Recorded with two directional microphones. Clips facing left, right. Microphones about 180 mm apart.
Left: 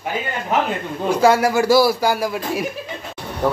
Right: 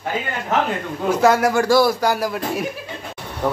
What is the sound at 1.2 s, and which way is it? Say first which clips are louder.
A man's voice: left 1 dB; centre (ahead or behind).